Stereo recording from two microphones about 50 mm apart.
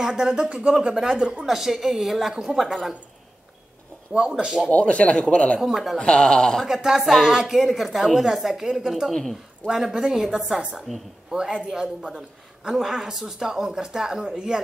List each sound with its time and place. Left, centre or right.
0.0 s a woman's voice: centre
1.4 s speech: centre
4.1 s a woman's voice: centre
4.6 s speech: left
5.6 s a woman's voice: centre
5.9 s a man's voice: left
6.7 s a woman's voice: centre